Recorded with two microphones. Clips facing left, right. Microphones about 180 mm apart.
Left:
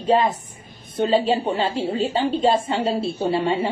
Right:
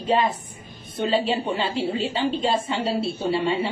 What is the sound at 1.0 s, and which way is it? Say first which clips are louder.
A woman's voice: left 4 dB; 40° left (ahead or behind).